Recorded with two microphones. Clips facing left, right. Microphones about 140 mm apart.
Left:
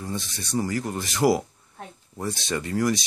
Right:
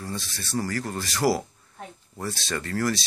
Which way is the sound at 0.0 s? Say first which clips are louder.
Left 2 dB; 20° left (ahead or behind).